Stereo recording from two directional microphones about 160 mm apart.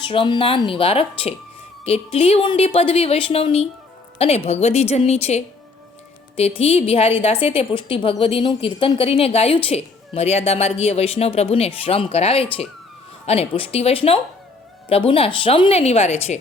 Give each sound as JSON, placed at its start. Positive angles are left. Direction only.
{"t": 0.0, "sound": "a woman's voice", "side_deg": 30}